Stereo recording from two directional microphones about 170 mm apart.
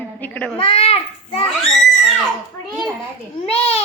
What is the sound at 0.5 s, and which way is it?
Speech, 35° left (ahead or behind).